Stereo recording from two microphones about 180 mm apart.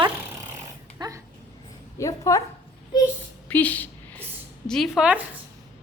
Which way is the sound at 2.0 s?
15° left (ahead or behind).